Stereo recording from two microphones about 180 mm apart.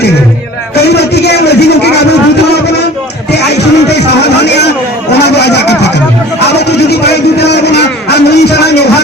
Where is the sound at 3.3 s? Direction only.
70° left (ahead or behind).